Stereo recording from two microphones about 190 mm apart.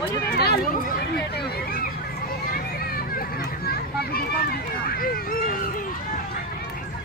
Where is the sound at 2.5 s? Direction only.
50° left (ahead or behind).